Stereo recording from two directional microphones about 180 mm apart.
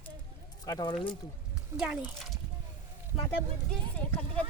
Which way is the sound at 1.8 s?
5° right (ahead or behind).